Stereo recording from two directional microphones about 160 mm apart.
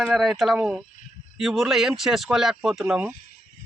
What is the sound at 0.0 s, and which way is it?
Speech, 5° right (ahead or behind).